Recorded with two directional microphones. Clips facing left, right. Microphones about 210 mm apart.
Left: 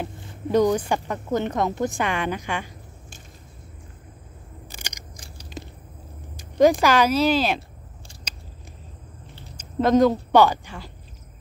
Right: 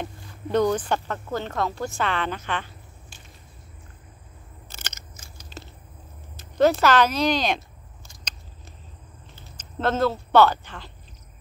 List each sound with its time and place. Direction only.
0.5 s a woman's voice: 10° left (ahead or behind)
4.6 s crushing: 10° left (ahead or behind)
5.6 s a sound: 15° left (ahead or behind)
6.6 s a woman's voice: 10° left (ahead or behind)
9.6 s speech: 10° left (ahead or behind)